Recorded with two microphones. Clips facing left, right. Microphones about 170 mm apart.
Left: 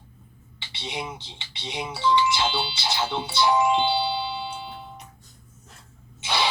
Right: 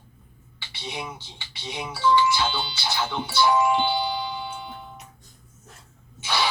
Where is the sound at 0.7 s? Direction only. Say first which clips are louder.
Left 1 dB; 25° left (ahead or behind).